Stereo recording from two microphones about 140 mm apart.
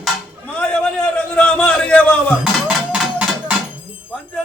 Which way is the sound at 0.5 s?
10° left (ahead or behind).